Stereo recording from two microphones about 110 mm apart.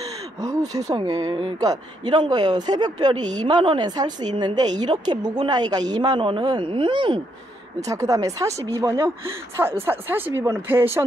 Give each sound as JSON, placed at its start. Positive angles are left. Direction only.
{"t": 0.4, "sound": "speech", "side_deg": -35}
{"t": 7.8, "sound": "speech", "side_deg": -30}